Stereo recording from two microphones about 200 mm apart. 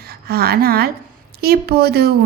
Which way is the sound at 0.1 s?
50° right (ahead or behind).